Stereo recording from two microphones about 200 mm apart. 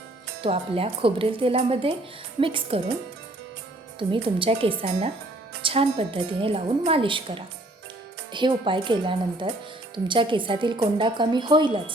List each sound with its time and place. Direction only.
0.4 s a woman's voice: 30° right (ahead or behind)
4.1 s a woman's voice: 25° right (ahead or behind)